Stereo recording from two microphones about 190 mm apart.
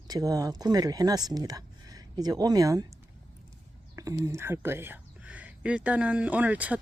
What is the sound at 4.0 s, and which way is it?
Speech, 15° right (ahead or behind).